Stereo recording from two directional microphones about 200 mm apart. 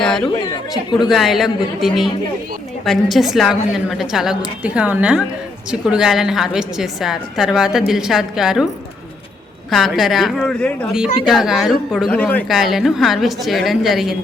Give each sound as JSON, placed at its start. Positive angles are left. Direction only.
{"t": 0.0, "sound": "a sound", "side_deg": 5}
{"t": 0.9, "sound": "a woman's voice", "side_deg": 0}
{"t": 9.6, "sound": "a woman's voice", "side_deg": 0}